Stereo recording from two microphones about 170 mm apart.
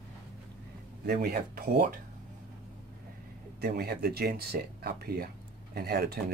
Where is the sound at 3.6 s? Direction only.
70° right (ahead or behind).